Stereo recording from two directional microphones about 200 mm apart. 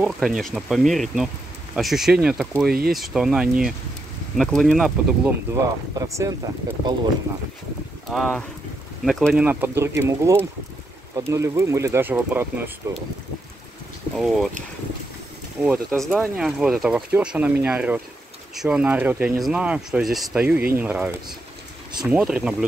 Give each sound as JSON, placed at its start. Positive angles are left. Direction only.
{"t": 0.0, "sound": "speech", "side_deg": 0}
{"t": 5.5, "sound": "speech", "side_deg": -15}
{"t": 8.1, "sound": "speech", "side_deg": 0}
{"t": 14.1, "sound": "speech", "side_deg": 0}
{"t": 15.6, "sound": "speech", "side_deg": -5}